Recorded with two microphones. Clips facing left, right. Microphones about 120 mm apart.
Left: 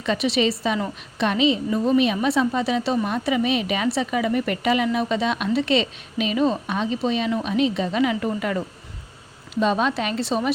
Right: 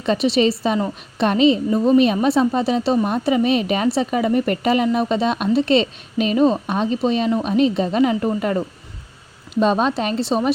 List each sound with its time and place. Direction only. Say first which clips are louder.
0.0 s a woman's voice: right 4 dB; 35° right (ahead or behind)